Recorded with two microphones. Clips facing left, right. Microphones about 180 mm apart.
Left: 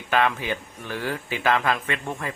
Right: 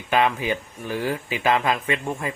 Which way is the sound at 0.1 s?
15° right (ahead or behind).